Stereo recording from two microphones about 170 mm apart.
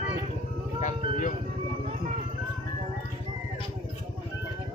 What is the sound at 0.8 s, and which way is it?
Speech, 50° left (ahead or behind).